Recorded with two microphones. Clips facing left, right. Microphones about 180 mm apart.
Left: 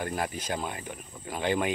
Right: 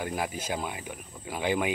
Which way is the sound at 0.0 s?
10° right (ahead or behind).